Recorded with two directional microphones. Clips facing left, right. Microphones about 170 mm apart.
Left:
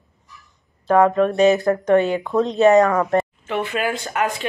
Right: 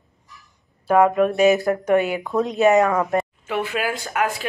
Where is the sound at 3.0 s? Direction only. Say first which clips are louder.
Left 3 dB; centre (ahead or behind).